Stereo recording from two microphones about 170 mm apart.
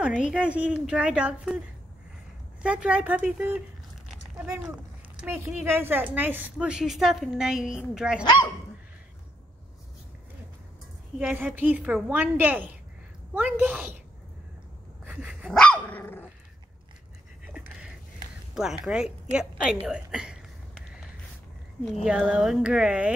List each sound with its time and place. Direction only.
0.0 s a woman's voice: 5° right (ahead or behind)
2.6 s a woman's voice: 5° right (ahead or behind)
5.1 s a woman's voice: 10° right (ahead or behind)
8.2 s speech: 25° left (ahead or behind)
11.1 s a woman's voice: 10° right (ahead or behind)
15.0 s dog: 5° right (ahead or behind)
15.6 s dog: 10° left (ahead or behind)
17.5 s a sound: 5° right (ahead or behind)
18.5 s a woman's voice: 5° right (ahead or behind)
22.3 s a woman's voice: 5° right (ahead or behind)